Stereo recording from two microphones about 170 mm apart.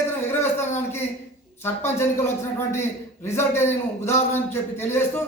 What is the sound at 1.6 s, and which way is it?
Speech, 15° left (ahead or behind).